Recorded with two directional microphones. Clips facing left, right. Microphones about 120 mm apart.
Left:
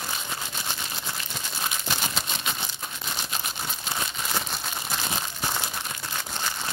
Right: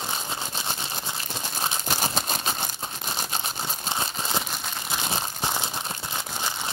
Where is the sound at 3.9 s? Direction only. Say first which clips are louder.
Right 2 dB; 25° right (ahead or behind).